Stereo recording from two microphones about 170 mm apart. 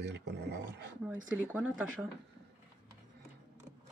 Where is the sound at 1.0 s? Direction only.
10° right (ahead or behind).